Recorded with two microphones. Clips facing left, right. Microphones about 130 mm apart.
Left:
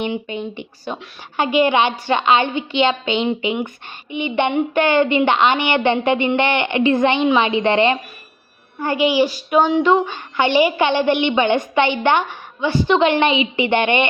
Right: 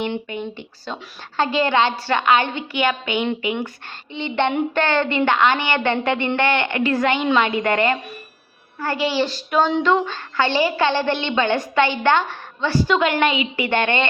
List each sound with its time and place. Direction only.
0.3 s a woman's voice: 20° left (ahead or behind)